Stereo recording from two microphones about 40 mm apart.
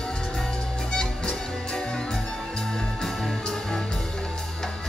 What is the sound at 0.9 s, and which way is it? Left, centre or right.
Music, centre.